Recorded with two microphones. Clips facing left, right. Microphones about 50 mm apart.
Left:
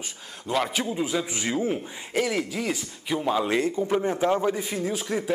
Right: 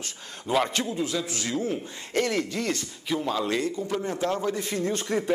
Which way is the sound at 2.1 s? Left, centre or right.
Centre.